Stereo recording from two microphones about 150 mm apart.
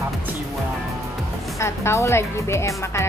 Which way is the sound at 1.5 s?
20° left (ahead or behind).